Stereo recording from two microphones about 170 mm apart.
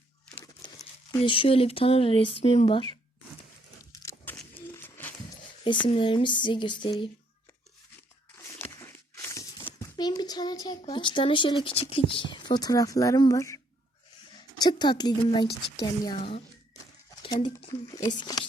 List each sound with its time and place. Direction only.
0.6 s speech: 25° left (ahead or behind)
4.4 s a sound: 10° left (ahead or behind)
5.8 s speech: 30° left (ahead or behind)
8.7 s a child's voice: 15° left (ahead or behind)